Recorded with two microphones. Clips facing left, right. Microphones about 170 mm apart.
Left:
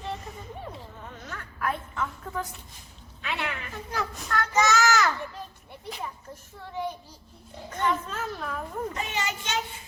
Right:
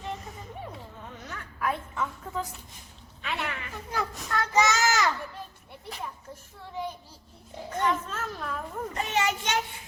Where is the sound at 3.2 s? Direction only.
Centre (ahead or behind).